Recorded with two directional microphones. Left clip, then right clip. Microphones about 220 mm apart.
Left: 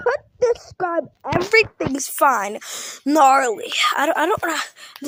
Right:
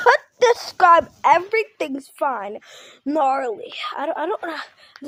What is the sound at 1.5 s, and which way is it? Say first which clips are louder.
A child's voice: left 5 dB; 25° left (ahead or behind).